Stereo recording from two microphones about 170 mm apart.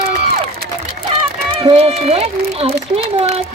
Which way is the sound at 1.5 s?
35° right (ahead or behind).